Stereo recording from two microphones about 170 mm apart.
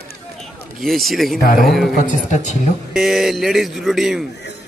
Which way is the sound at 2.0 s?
45° left (ahead or behind).